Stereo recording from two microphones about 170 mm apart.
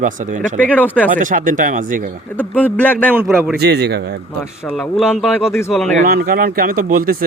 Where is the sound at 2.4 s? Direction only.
10° left (ahead or behind).